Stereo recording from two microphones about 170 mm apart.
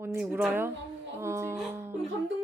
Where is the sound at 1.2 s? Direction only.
15° right (ahead or behind).